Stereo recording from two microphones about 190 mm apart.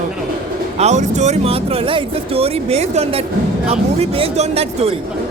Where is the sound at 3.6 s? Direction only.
35° right (ahead or behind).